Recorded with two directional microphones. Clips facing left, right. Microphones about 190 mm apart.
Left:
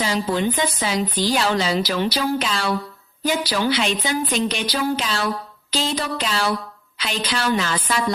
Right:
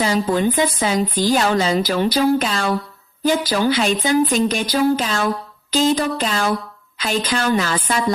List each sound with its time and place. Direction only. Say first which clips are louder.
0.0 s speech: right 4 dB; 45° right (ahead or behind)